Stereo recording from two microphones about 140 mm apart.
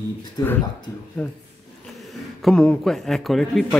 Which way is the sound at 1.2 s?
10° left (ahead or behind).